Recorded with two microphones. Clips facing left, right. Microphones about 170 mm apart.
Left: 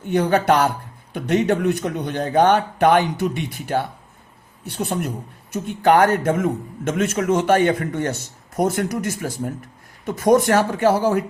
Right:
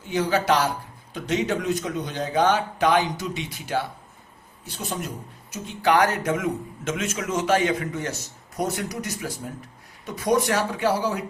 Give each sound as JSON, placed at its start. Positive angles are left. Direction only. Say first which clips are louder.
{"t": 0.0, "sound": "a man's voice", "louder": "left 5 dB", "side_deg": 55}